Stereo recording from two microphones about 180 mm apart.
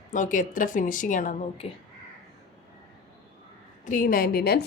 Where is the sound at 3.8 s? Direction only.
45° left (ahead or behind).